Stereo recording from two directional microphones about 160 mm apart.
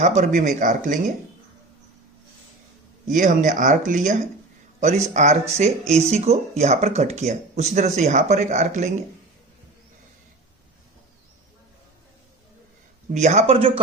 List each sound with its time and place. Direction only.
0.0 s speech: 50° right (ahead or behind)
3.1 s speech: 55° right (ahead or behind)
13.1 s speech: 45° right (ahead or behind)